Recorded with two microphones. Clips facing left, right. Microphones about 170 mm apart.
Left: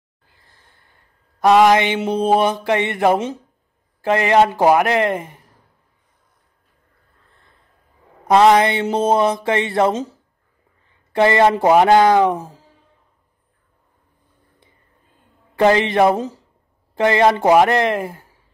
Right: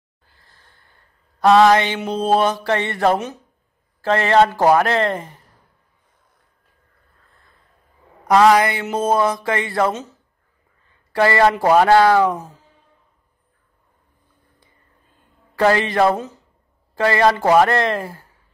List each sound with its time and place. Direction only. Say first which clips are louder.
1.4 s a man's voice: even; 15° left (ahead or behind)
8.3 s mantra: left 1 dB; 25° left (ahead or behind)
10.9 s speech: left 2 dB; 20° left (ahead or behind)
15.5 s mantra: left 2 dB; 20° left (ahead or behind)